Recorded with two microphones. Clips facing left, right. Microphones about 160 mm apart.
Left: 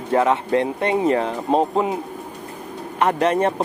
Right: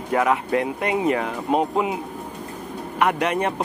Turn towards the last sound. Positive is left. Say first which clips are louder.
# left 4 dB
turn(degrees=35)  # may be behind; listen again after turning